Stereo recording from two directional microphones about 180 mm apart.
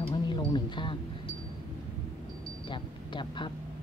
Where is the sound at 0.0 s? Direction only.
25° left (ahead or behind).